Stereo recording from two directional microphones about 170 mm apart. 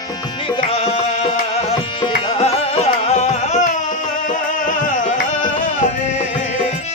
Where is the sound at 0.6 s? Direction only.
35° left (ahead or behind); by 4.9 s 50° left (ahead or behind).